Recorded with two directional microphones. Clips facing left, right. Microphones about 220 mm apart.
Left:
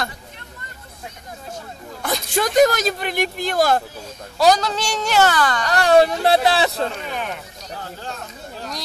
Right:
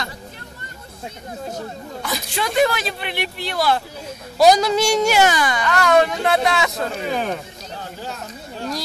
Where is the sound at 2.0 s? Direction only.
55° left (ahead or behind).